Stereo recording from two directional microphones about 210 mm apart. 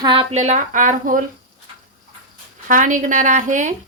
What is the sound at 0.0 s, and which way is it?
A woman's voice, 25° right (ahead or behind).